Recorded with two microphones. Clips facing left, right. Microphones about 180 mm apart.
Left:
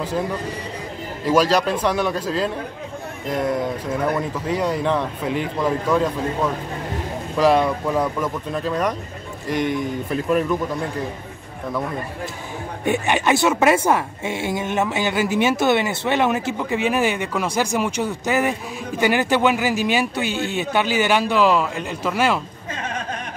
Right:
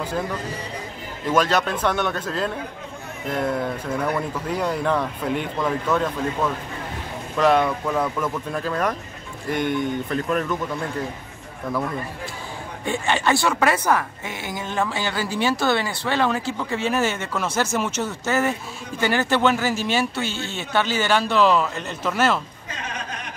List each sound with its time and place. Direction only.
1.2 s speech: centre (ahead or behind)
4.1 s speech: centre (ahead or behind)
7.3 s speech: centre (ahead or behind)
12.8 s a woman's voice: 15° left (ahead or behind)